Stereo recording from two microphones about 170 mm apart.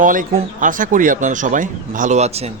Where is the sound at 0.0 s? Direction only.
50° right (ahead or behind).